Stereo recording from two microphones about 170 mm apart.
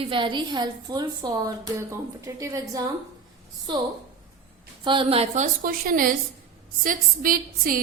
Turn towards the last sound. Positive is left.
turn(degrees=-55)  # may be behind; listen again after turning